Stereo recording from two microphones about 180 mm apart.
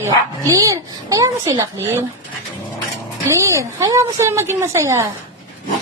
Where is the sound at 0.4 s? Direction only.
20° right (ahead or behind).